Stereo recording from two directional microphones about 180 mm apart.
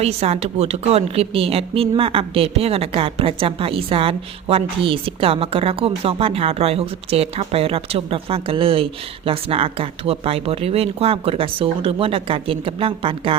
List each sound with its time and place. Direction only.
0.0 s a woman's voice: 35° right (ahead or behind)